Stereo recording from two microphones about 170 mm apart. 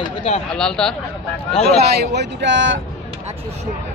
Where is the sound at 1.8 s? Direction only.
85° right.